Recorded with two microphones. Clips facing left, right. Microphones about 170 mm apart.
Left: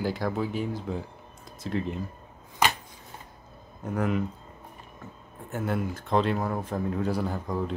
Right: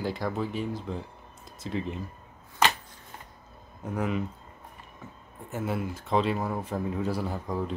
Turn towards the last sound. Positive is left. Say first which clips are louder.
# left 1 dB
turn(degrees=0)  # may be behind; listen again after turning